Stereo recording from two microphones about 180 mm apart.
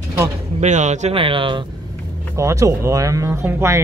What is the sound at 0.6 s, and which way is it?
Speech, 40° right (ahead or behind).